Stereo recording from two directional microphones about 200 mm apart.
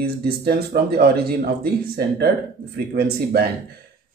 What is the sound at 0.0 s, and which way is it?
Speech, 50° right (ahead or behind).